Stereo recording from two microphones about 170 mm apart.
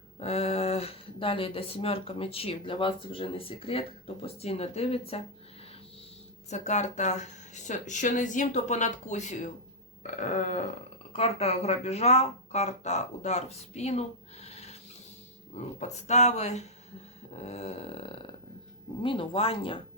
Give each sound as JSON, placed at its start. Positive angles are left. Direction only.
{"t": 0.2, "sound": "speech", "side_deg": 40}
{"t": 6.5, "sound": "speech", "side_deg": 45}
{"t": 14.4, "sound": "a sound", "side_deg": 40}
{"t": 15.5, "sound": "speech", "side_deg": 40}